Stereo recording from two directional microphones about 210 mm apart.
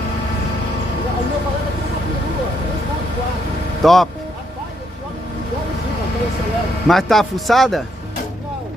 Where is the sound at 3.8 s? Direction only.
Centre (ahead or behind).